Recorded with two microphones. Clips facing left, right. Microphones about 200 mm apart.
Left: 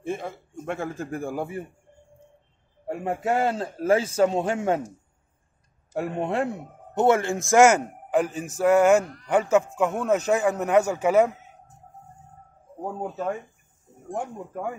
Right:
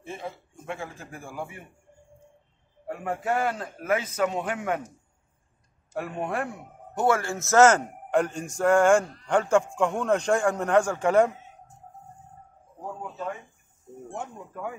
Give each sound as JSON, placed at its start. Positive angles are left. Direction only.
{"t": 0.0, "sound": "speech", "side_deg": 50}
{"t": 2.9, "sound": "a man's voice", "side_deg": 30}
{"t": 5.9, "sound": "a man's voice", "side_deg": 25}
{"t": 9.0, "sound": "speech", "side_deg": -25}
{"t": 9.3, "sound": "speech", "side_deg": 5}